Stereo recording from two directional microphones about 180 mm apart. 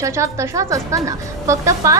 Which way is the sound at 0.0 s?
15° right (ahead or behind).